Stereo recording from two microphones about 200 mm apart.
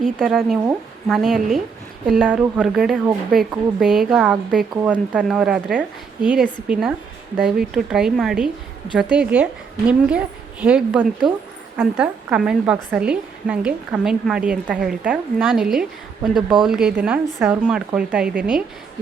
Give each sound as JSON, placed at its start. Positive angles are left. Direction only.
{"t": 0.0, "sound": "a woman's voice", "side_deg": 0}